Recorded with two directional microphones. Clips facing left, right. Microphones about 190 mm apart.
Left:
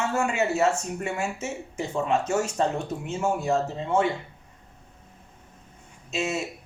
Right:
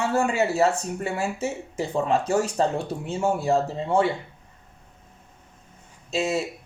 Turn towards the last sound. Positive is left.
turn(degrees=-35)  # may be behind; listen again after turning